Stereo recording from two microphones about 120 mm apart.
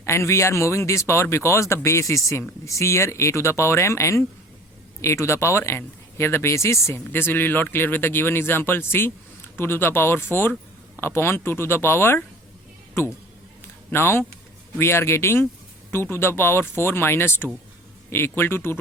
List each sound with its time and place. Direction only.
0.0 s speech: 25° left (ahead or behind)